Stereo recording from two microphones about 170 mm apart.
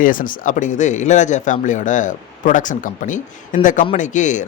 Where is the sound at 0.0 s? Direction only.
55° left (ahead or behind).